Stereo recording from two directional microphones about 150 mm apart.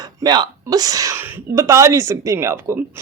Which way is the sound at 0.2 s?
25° right (ahead or behind).